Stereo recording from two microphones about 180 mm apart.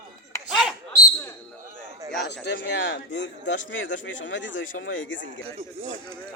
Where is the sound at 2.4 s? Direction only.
75° left (ahead or behind); by 5.3 s 90° left.